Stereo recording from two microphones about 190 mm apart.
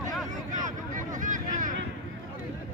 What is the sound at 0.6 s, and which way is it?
Vehicle, 40° right (ahead or behind).